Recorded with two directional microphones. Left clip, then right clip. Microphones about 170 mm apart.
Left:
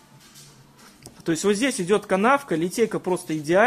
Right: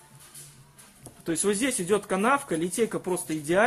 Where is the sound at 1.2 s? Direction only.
50° left (ahead or behind).